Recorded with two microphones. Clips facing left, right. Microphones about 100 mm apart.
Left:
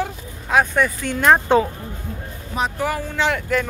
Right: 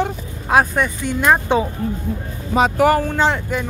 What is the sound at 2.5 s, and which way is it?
Speech, 85° right.